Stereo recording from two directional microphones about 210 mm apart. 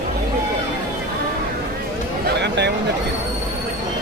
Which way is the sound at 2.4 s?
55° right (ahead or behind).